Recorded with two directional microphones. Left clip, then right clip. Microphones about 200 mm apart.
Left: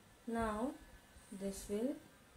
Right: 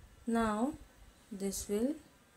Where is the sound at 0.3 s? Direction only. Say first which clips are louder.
Right 6 dB; 55° right (ahead or behind).